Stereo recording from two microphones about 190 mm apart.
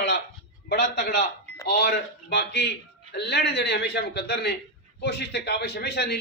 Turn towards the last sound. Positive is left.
turn(degrees=60)  # may be behind; listen again after turning